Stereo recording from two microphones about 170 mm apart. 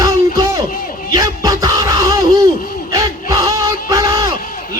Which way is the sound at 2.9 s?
20° right (ahead or behind).